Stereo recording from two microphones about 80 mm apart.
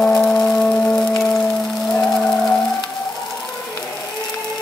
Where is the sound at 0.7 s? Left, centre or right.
Centre.